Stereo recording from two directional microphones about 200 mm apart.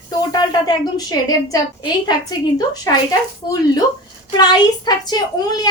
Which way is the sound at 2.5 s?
20° left (ahead or behind).